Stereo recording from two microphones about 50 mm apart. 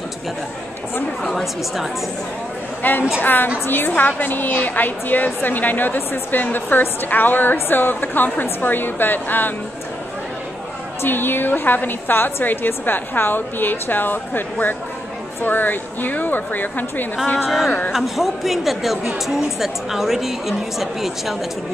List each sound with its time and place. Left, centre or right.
2.8 s a woman's voice: left
11.0 s a woman's voice: left
17.5 s speech: centre